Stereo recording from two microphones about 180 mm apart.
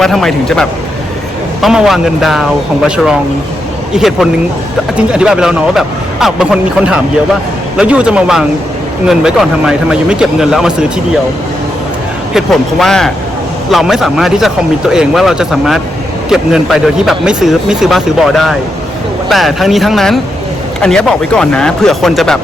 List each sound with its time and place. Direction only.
0.0 s speech: centre (ahead or behind)
12.3 s speech: centre (ahead or behind)